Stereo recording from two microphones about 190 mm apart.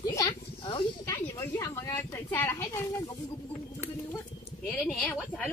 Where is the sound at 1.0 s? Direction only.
15° left (ahead or behind).